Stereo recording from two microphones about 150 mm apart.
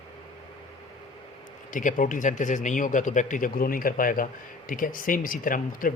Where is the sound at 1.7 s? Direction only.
60° left (ahead or behind).